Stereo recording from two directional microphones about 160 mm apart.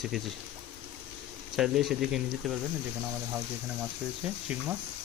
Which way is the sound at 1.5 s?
Centre (ahead or behind).